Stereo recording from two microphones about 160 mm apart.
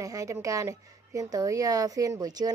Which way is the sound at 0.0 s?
20° right (ahead or behind).